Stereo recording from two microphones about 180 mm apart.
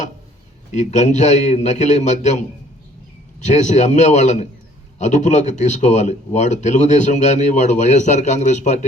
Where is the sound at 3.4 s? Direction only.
40° left (ahead or behind).